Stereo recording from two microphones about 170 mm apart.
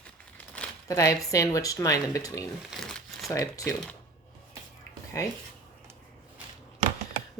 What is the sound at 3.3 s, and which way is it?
Speech, 20° left (ahead or behind).